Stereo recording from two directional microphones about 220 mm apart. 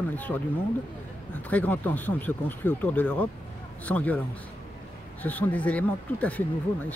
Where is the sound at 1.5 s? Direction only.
5° left (ahead or behind).